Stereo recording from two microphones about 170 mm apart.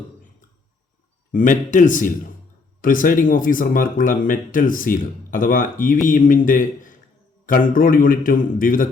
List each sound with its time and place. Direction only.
1.3 s a man's voice: 50° left (ahead or behind)